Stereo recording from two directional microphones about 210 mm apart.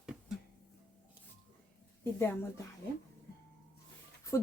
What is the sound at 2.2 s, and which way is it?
Speech, 10° left (ahead or behind).